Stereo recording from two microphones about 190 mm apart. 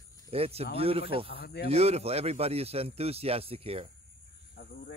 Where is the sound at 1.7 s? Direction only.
35° right (ahead or behind).